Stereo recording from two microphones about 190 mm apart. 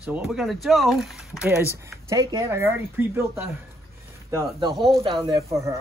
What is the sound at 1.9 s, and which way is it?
Speech, 15° right (ahead or behind).